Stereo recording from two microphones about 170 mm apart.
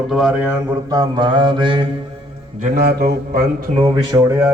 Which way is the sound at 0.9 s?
25° right (ahead or behind).